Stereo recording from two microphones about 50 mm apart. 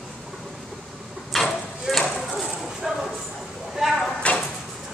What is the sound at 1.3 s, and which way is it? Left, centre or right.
Clip-clop, centre.